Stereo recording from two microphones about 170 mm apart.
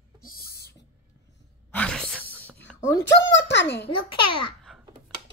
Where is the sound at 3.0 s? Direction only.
90° left.